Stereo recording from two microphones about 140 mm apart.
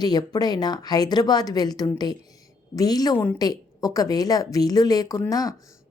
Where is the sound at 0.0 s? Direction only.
30° left (ahead or behind).